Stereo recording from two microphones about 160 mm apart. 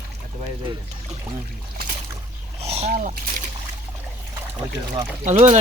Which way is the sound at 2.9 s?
50° right (ahead or behind).